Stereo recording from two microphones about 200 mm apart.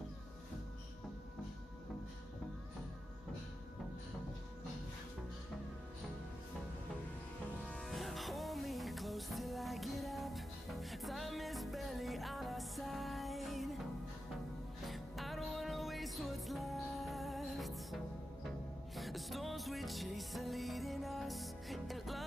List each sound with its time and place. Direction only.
7.9 s music: centre (ahead or behind)
14.9 s music: centre (ahead or behind)